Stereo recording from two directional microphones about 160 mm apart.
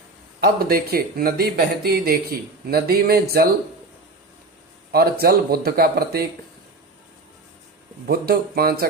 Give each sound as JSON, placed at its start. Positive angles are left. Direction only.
{"t": 0.4, "sound": "speech", "side_deg": -70}
{"t": 4.9, "sound": "speech", "side_deg": -75}
{"t": 8.0, "sound": "speech", "side_deg": -75}